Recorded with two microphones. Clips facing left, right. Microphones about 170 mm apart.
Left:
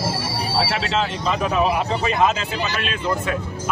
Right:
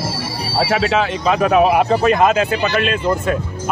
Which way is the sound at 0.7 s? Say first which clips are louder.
Right 6 dB; 60° right (ahead or behind).